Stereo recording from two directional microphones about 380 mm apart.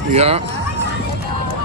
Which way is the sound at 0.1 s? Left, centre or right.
Centre.